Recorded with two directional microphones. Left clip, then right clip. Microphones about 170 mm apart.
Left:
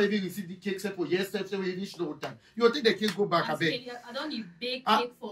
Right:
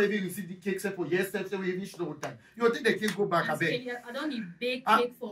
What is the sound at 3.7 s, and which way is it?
A man's voice, 10° left (ahead or behind).